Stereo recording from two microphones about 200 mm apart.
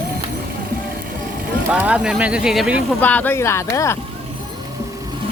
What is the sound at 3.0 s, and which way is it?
Speech, 10° left (ahead or behind).